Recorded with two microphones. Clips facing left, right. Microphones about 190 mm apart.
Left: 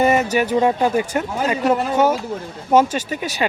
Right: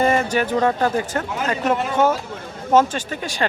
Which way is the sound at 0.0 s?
10° left (ahead or behind).